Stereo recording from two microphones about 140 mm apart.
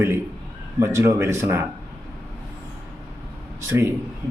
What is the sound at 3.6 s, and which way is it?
Speech, 20° right (ahead or behind).